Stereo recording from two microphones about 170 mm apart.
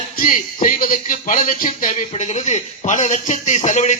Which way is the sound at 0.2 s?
55° left (ahead or behind).